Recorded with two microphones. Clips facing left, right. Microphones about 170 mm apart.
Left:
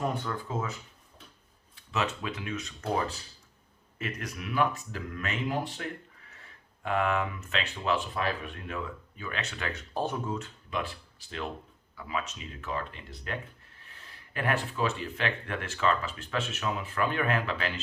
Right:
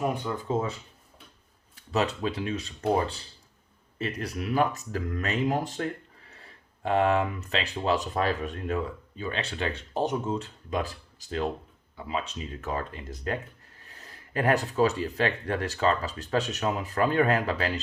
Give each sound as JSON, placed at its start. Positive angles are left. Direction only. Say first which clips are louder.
{"t": 0.0, "sound": "speech", "louder": "right 3 dB", "side_deg": -15}
{"t": 0.4, "sound": "speech", "louder": "right 6 dB", "side_deg": -30}
{"t": 6.3, "sound": "speech", "louder": "right 3 dB", "side_deg": -35}
{"t": 10.3, "sound": "speech", "louder": "right 4 dB", "side_deg": -35}